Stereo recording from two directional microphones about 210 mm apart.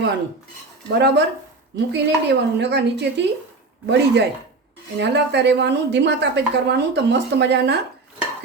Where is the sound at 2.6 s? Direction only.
55° right (ahead or behind).